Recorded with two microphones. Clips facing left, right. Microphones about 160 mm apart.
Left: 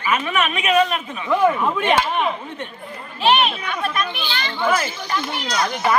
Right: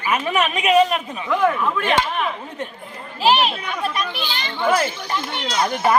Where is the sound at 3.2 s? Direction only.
30° right (ahead or behind).